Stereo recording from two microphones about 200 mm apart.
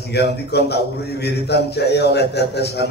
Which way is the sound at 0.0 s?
55° left (ahead or behind).